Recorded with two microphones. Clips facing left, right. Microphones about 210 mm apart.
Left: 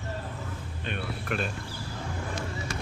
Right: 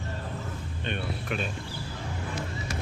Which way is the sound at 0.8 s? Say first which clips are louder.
Right 1 dB; 5° left (ahead or behind).